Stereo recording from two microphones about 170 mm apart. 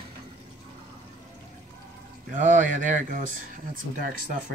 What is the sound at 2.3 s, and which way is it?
Speech, 50° right (ahead or behind).